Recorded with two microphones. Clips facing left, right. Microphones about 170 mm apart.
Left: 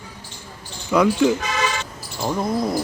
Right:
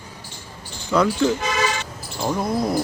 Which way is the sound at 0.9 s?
10° left (ahead or behind).